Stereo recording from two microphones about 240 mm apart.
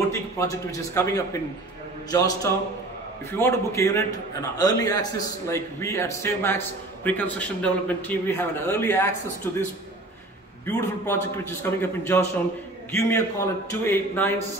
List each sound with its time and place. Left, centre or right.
0.1 s a man's voice: centre
10.7 s a man's voice: centre